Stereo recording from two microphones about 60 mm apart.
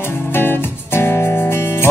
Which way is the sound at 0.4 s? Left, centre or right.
Left.